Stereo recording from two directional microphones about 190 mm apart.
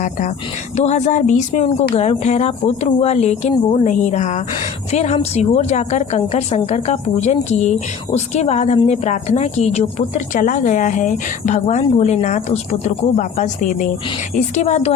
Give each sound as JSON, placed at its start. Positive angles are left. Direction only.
{"t": 0.8, "sound": "a woman's voice", "side_deg": 35}